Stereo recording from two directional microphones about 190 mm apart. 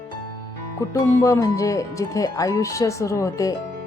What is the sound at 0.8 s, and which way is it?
Speech, 15° left (ahead or behind).